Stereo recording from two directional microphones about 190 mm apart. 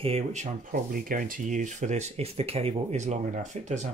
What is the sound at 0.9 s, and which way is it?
Speech, 45° right (ahead or behind).